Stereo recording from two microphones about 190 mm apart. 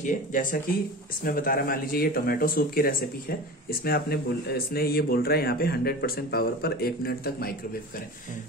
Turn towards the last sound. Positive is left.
turn(degrees=55)  # may be behind; listen again after turning